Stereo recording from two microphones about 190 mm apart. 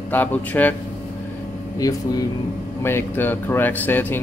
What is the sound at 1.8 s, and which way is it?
Speech, 20° left (ahead or behind).